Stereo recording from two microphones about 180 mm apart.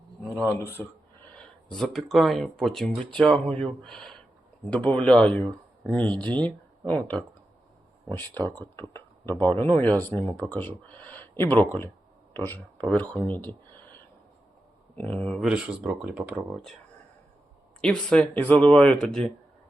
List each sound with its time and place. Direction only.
0.3 s speech: 15° left (ahead or behind)
1.4 s speech: centre (ahead or behind)
8.4 s speech: 10° left (ahead or behind)
8.9 s a sound: 15° left (ahead or behind)
9.3 s a man's voice: 20° right (ahead or behind)
9.6 s speech: 15° left (ahead or behind)
15.0 s speech: 5° left (ahead or behind)
15.4 s speech: 5° right (ahead or behind)
17.7 s speech: 5° left (ahead or behind)